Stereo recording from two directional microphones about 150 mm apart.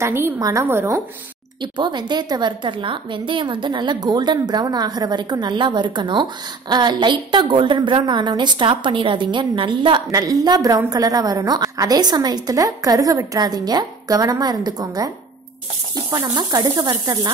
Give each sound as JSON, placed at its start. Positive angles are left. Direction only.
{"t": 0.0, "sound": "a woman's voice", "side_deg": -15}
{"t": 1.6, "sound": "a woman's voice", "side_deg": -30}
{"t": 16.1, "sound": "a woman's voice", "side_deg": -25}